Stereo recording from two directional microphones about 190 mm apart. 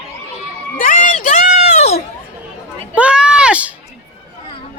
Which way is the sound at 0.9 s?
45° left (ahead or behind).